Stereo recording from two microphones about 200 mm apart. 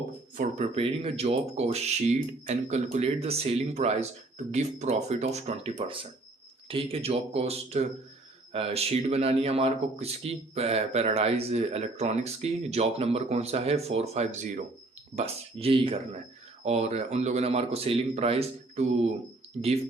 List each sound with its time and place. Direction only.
0.3 s speech: 35° right (ahead or behind)